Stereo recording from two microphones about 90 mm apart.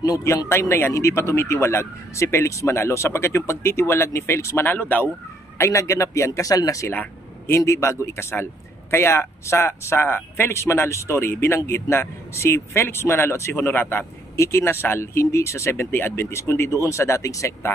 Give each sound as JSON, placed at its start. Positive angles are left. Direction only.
{"t": 0.0, "sound": "speech", "side_deg": 40}
{"t": 4.6, "sound": "speech", "side_deg": 20}
{"t": 5.6, "sound": "speech", "side_deg": 35}
{"t": 6.9, "sound": "speech", "side_deg": 25}